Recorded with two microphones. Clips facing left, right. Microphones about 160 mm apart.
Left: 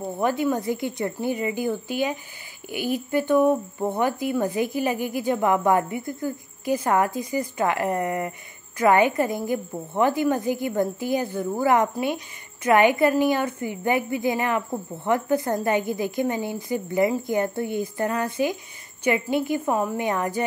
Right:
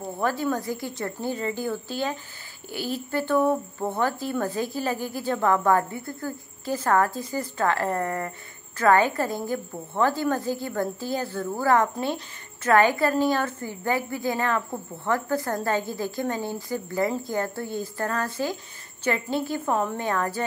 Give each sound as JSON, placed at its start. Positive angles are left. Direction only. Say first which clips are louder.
{"t": 0.2, "sound": "a woman's voice", "louder": "left 3 dB", "side_deg": 20}